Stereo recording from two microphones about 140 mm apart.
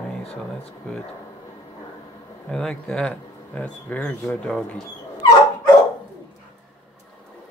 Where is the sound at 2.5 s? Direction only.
5° left (ahead or behind).